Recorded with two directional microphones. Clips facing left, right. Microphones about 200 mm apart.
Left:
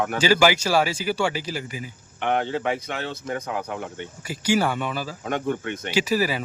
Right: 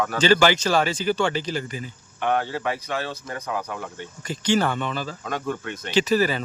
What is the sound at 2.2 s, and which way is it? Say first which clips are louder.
Speech: even; 20° left (ahead or behind).